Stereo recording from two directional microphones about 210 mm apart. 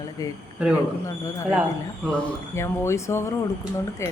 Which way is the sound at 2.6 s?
15° left (ahead or behind).